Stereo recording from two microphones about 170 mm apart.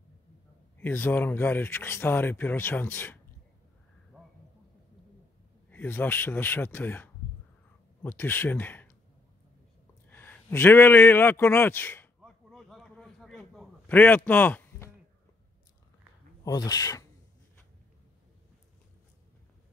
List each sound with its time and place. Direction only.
0.7 s speech: 10° left (ahead or behind)
5.7 s speech: 10° left (ahead or behind)
10.0 s a man's voice: 10° left (ahead or behind)
12.2 s a sound: centre (ahead or behind)
16.4 s speech: 25° left (ahead or behind)